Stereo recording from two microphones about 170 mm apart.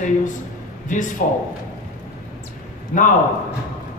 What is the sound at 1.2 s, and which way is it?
Speech, 55° left (ahead or behind).